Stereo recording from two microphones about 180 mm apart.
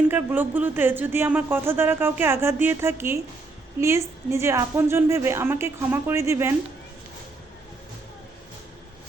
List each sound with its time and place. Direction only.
0.1 s speech: 10° right (ahead or behind)